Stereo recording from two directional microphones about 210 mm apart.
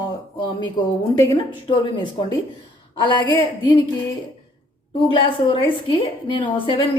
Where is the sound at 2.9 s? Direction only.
20° left (ahead or behind).